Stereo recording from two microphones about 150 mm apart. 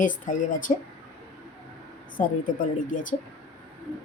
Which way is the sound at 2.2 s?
65° left (ahead or behind).